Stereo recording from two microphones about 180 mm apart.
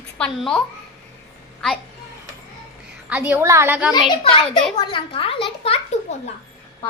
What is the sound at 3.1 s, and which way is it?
Speech, 10° right (ahead or behind).